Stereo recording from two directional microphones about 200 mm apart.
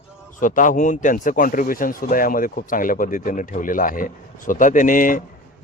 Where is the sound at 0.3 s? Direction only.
40° left (ahead or behind).